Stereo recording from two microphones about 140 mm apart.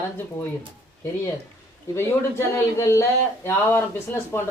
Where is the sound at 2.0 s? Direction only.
20° left (ahead or behind).